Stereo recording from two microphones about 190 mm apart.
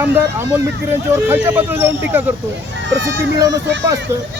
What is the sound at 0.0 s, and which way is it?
Speech, 15° right (ahead or behind).